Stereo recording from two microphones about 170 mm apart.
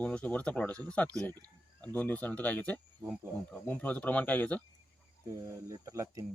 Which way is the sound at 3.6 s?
10° left (ahead or behind).